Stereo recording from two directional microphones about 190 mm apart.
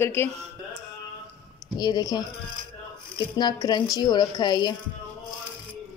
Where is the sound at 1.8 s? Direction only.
20° left (ahead or behind).